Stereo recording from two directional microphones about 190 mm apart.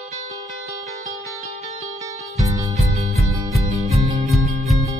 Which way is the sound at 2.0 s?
15° right (ahead or behind).